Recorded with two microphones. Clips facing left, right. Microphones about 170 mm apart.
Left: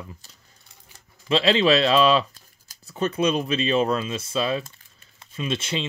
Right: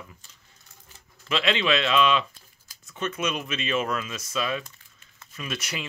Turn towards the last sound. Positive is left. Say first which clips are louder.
# left 7 dB
turn(degrees=25)  # may be behind; listen again after turning